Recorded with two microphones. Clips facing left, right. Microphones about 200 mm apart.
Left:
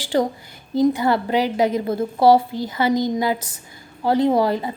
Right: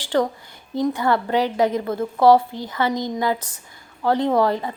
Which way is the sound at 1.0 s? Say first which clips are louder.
Left 1 dB; 30° left (ahead or behind).